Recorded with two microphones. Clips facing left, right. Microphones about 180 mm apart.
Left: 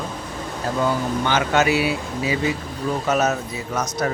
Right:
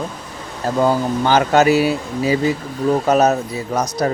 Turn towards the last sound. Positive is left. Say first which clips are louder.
# right 4 dB
turn(degrees=-35)  # may be behind; listen again after turning